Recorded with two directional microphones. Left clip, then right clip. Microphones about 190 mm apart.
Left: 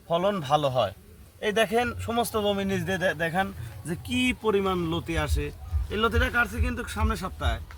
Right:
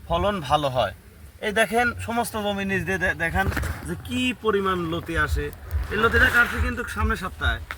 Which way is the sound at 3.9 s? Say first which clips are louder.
Left 2 dB; 65° left (ahead or behind).